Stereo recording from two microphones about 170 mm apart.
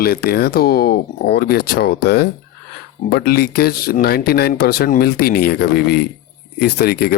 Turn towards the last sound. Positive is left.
turn(degrees=65)  # may be behind; listen again after turning